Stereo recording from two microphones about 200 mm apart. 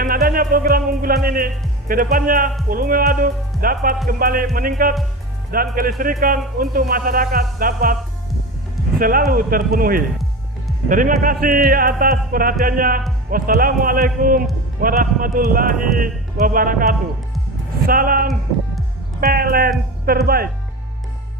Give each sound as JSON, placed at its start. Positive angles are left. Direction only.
{"t": 0.0, "sound": "a man's voice", "side_deg": -45}
{"t": 9.0, "sound": "a man's voice", "side_deg": -45}